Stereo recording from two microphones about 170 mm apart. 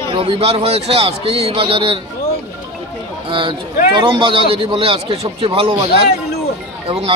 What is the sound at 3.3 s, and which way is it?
A man's voice, 30° right (ahead or behind).